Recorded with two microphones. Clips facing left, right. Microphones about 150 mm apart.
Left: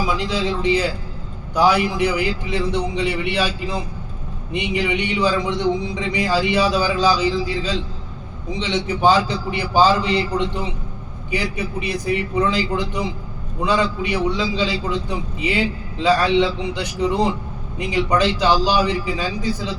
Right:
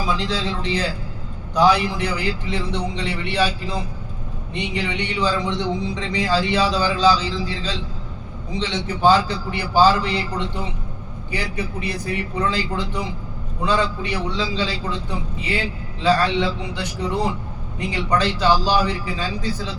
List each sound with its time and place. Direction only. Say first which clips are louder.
0.1 s a man's voice: left 2 dB; 15° left (ahead or behind)
4.5 s a man's voice: left 4 dB; 10° left (ahead or behind)
8.5 s a man's voice: left 2 dB; 15° left (ahead or behind)
16.0 s a man's voice: left 2 dB; 15° left (ahead or behind)